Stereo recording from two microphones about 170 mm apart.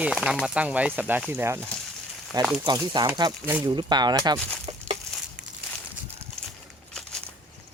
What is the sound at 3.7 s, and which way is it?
Speech, 25° right (ahead or behind).